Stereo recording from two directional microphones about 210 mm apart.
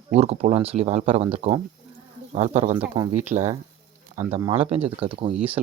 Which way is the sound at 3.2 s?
10° right (ahead or behind).